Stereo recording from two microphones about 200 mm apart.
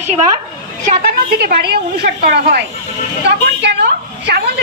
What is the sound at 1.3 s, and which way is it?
A woman's voice, 50° right (ahead or behind).